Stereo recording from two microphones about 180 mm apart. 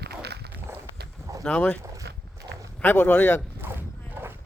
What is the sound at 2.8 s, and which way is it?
Speech, 10° left (ahead or behind).